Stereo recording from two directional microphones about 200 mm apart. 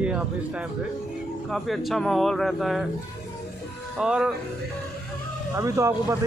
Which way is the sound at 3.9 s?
5° right (ahead or behind).